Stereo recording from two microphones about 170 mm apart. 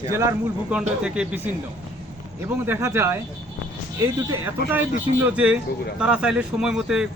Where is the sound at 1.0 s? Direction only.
5° right (ahead or behind).